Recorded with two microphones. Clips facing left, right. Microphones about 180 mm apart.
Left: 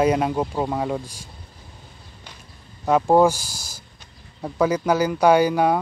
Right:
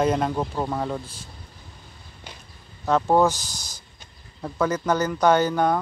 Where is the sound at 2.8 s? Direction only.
10° left (ahead or behind).